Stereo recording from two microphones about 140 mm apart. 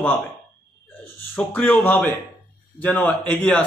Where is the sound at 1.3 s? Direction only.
10° left (ahead or behind).